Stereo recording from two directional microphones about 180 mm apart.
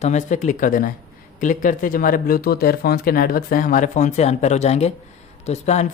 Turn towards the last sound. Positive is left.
turn(degrees=40)  # may be behind; listen again after turning